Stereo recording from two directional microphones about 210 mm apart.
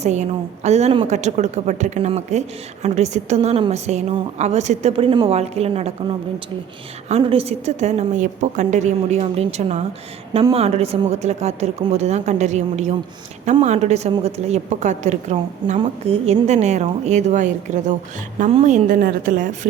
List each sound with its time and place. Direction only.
0.0 s a woman's voice: 35° right (ahead or behind)
7.1 s a woman's voice: 25° right (ahead or behind)